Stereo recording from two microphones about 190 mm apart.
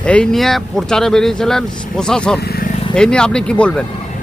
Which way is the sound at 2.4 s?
55° left (ahead or behind).